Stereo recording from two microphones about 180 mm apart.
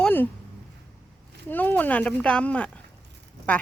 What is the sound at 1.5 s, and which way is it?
Speech, 10° left (ahead or behind).